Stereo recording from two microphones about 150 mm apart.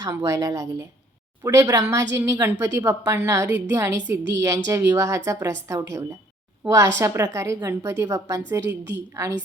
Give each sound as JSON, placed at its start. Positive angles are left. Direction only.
{"t": 0.0, "sound": "a woman's voice", "side_deg": -20}